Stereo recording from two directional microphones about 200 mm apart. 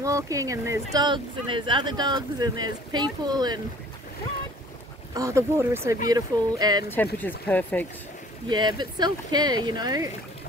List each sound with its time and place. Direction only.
0.0 s speech: 15° right (ahead or behind)
5.1 s speech: 15° right (ahead or behind)
7.2 s speech: 10° left (ahead or behind)
8.5 s speech: 20° right (ahead or behind)